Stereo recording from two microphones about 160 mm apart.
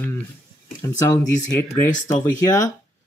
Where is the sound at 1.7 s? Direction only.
50° left (ahead or behind).